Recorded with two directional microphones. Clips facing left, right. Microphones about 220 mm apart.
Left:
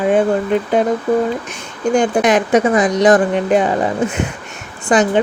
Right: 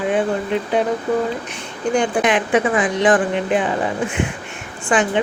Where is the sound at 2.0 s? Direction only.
40° left (ahead or behind).